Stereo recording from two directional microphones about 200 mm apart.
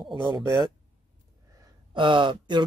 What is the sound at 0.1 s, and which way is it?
Speech, 25° right (ahead or behind).